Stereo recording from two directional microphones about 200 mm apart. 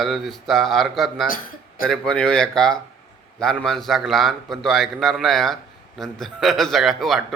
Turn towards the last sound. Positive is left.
turn(degrees=0)  # may be behind; listen again after turning